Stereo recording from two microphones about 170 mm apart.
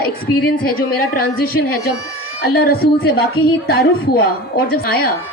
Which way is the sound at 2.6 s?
65° left (ahead or behind).